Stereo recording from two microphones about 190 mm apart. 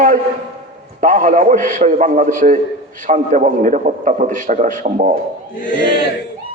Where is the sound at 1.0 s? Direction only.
45° right (ahead or behind).